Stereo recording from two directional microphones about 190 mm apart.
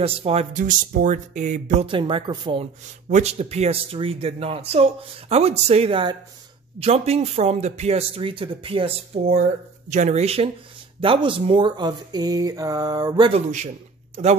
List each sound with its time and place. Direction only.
0.0 s a man's voice: 30° right (ahead or behind)
1.9 s a man's voice: 25° right (ahead or behind)
13.3 s a man's voice: 40° right (ahead or behind)